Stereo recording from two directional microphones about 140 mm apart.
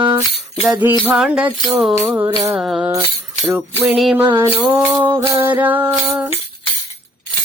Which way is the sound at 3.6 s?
15° right (ahead or behind).